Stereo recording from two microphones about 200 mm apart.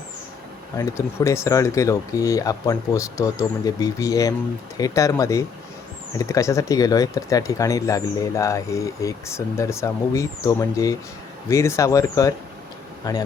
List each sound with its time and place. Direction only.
0.8 s speech: 15° left (ahead or behind)